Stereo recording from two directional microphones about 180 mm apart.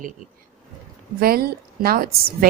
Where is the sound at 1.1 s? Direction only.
55° right (ahead or behind).